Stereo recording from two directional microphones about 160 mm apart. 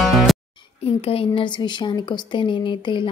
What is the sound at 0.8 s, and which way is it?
A woman's voice, 35° left (ahead or behind).